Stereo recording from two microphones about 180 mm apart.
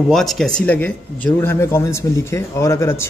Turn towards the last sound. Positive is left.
turn(degrees=15)  # may be behind; listen again after turning